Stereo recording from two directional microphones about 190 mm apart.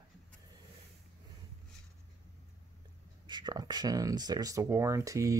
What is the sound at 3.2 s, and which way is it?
Speech, 25° right (ahead or behind).